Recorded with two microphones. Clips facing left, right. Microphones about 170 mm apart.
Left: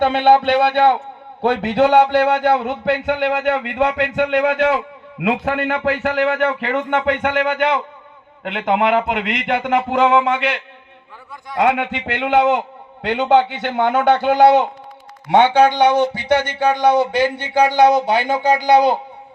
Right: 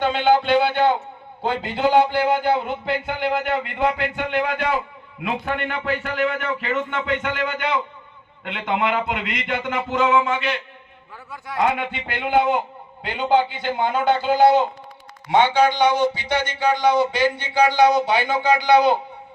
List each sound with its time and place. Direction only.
0.0 s a man's voice: 55° left (ahead or behind); by 18.9 s 40° left (ahead or behind)